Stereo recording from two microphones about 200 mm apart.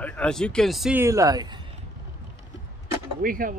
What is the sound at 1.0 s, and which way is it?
Speech, 15° right (ahead or behind).